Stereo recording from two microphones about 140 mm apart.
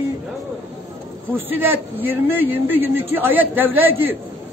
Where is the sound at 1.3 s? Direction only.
15° right (ahead or behind).